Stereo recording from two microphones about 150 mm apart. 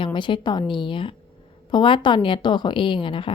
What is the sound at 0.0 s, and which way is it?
A woman's voice, 30° left (ahead or behind).